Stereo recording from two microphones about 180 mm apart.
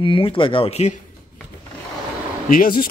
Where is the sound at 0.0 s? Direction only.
30° left (ahead or behind).